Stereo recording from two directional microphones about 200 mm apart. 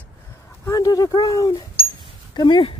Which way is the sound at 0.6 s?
15° left (ahead or behind).